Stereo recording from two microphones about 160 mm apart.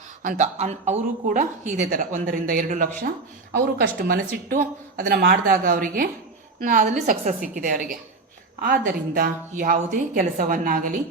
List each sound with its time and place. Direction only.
0.2 s a woman's voice: 55° right (ahead or behind)
3.8 s a woman's voice: 65° right (ahead or behind)